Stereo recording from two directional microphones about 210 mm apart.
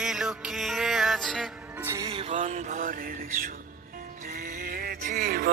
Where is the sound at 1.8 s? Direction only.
15° right (ahead or behind).